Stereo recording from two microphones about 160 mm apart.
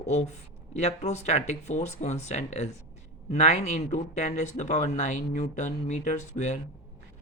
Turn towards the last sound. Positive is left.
turn(degrees=45)  # may be behind; listen again after turning